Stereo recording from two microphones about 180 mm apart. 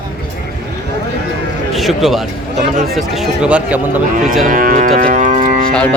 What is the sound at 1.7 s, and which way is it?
Speech, centre (ahead or behind).